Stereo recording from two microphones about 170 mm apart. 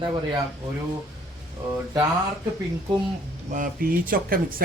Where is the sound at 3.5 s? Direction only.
55° right (ahead or behind).